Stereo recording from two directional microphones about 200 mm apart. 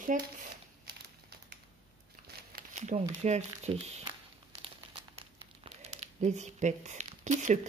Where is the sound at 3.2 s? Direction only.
35° right (ahead or behind).